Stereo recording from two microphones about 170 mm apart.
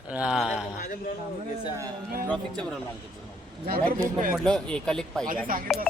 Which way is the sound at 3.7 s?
55° right (ahead or behind).